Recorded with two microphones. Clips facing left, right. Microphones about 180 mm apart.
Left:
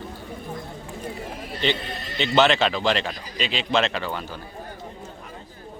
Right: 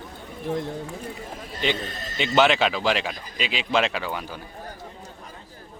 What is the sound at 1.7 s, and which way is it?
Speech, 45° right (ahead or behind).